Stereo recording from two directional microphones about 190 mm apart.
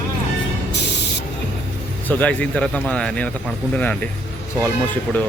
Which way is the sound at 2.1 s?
10° left (ahead or behind).